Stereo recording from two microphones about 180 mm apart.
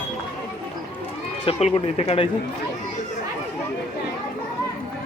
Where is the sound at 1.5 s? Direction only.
35° left (ahead or behind).